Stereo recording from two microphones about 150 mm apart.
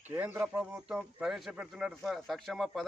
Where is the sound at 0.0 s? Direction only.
15° right (ahead or behind).